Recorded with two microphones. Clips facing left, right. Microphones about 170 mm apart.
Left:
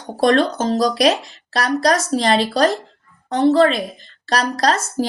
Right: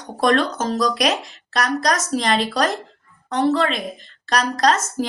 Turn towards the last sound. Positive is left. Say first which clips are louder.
# even
turn(degrees=35)  # may be behind; listen again after turning